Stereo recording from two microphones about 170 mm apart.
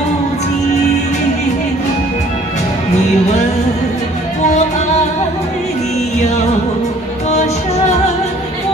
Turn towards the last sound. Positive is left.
turn(degrees=40)  # may be behind; listen again after turning